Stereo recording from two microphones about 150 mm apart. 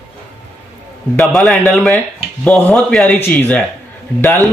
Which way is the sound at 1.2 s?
Centre (ahead or behind).